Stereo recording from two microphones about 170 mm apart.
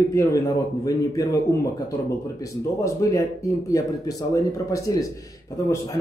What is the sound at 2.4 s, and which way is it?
Speech, 20° left (ahead or behind).